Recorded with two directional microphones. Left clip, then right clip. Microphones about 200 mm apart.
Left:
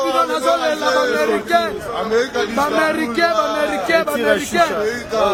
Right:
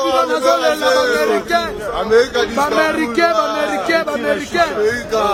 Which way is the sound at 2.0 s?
25° right (ahead or behind).